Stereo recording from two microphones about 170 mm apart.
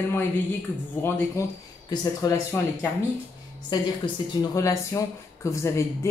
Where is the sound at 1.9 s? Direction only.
20° left (ahead or behind).